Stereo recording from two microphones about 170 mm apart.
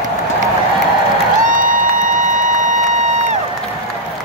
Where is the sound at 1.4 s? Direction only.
50° right (ahead or behind).